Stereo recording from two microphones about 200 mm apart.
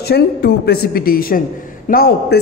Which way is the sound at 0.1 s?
55° left (ahead or behind).